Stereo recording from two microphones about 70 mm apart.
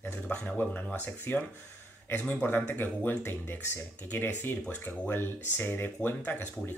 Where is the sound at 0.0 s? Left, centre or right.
Left.